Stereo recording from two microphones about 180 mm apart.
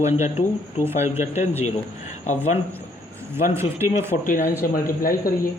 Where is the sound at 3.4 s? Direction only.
15° right (ahead or behind).